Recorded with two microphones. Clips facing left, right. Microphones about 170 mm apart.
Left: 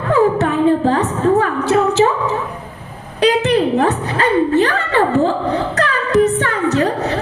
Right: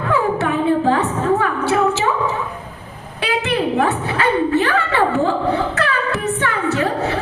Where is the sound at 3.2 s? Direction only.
40° left (ahead or behind).